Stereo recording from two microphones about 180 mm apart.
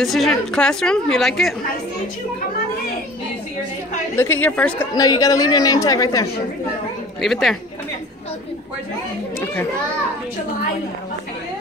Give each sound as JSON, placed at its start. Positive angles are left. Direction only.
{"t": 0.0, "sound": "a woman's voice", "side_deg": 0}
{"t": 4.2, "sound": "a woman's voice", "side_deg": 10}
{"t": 4.9, "sound": "a man's voice", "side_deg": 20}
{"t": 7.2, "sound": "a woman's voice", "side_deg": 0}